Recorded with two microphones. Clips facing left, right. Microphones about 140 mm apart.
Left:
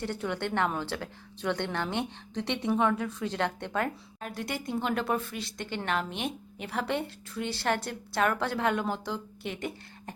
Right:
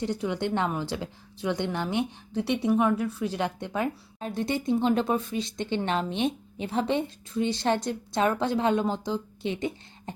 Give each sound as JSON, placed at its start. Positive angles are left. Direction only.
{"t": 0.0, "sound": "speech", "side_deg": -15}
{"t": 4.2, "sound": "speech", "side_deg": -25}